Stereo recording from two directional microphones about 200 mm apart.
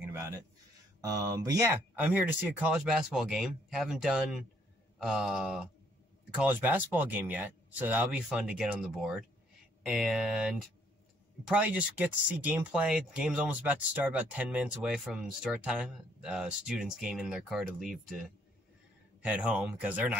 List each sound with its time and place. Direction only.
1.0 s speech: 15° right (ahead or behind)
19.2 s speech: 5° right (ahead or behind)